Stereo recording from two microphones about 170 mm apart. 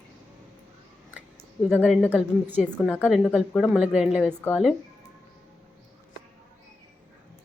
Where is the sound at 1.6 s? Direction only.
10° left (ahead or behind).